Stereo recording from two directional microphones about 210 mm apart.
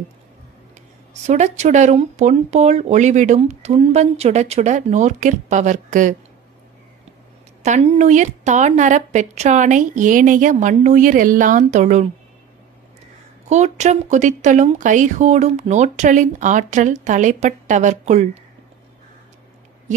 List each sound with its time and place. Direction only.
1.2 s speech: 35° right (ahead or behind)
7.6 s speech: 35° right (ahead or behind)
13.5 s speech: 35° right (ahead or behind)